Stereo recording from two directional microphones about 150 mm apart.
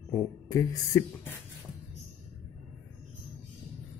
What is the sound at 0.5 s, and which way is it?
Speech, 20° left (ahead or behind).